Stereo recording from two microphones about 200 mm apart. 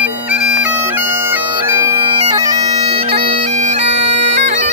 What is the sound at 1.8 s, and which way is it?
Bagpipes, 20° right (ahead or behind).